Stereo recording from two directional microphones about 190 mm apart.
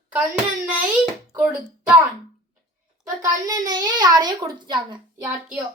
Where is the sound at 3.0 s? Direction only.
20° right (ahead or behind).